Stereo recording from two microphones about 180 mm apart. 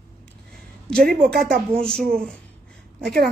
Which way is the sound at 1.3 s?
55° right (ahead or behind).